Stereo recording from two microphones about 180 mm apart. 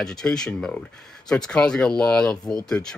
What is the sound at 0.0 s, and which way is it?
Speech, 5° left (ahead or behind).